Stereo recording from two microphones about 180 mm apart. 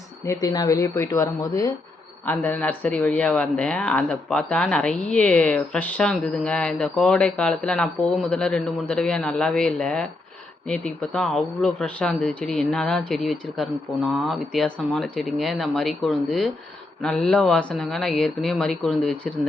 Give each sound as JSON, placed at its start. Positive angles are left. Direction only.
{"t": 0.3, "sound": "speech", "side_deg": 20}